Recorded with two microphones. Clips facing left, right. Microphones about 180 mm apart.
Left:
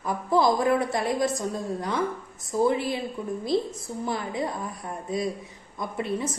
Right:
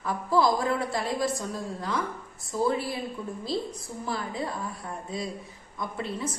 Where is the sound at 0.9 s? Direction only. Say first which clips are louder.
Left 3 dB; 20° left (ahead or behind).